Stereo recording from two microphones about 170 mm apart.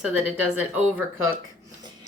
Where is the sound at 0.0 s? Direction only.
10° right (ahead or behind).